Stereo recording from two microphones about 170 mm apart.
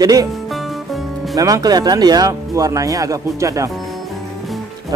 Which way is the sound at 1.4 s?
20° right (ahead or behind).